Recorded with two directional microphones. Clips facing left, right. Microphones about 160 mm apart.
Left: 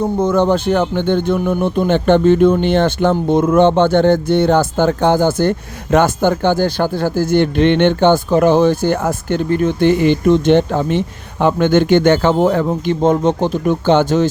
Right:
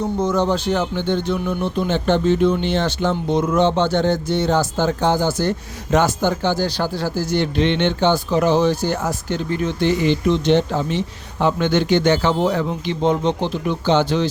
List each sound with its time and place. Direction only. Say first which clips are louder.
0.0 s speech: left 5 dB; 55° left (ahead or behind)